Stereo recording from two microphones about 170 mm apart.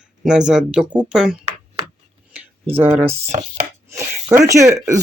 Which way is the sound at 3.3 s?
45° right (ahead or behind).